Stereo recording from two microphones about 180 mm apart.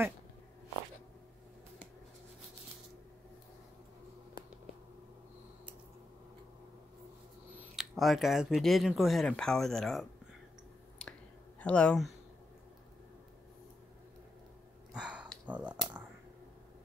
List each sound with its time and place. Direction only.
7.5 s speech: centre (ahead or behind)
11.0 s finger snapping: 5° left (ahead or behind)
11.6 s speech: 5° left (ahead or behind)
14.9 s a sound: 5° right (ahead or behind)